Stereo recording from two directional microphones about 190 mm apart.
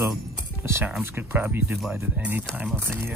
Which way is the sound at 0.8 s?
5° right (ahead or behind).